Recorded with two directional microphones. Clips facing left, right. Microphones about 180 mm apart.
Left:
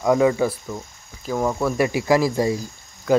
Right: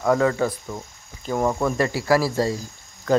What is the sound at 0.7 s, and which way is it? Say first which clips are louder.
Speech: left 1 dB; 5° right (ahead or behind).